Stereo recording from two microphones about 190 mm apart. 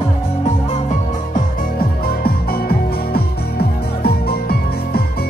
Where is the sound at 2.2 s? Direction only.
50° left (ahead or behind).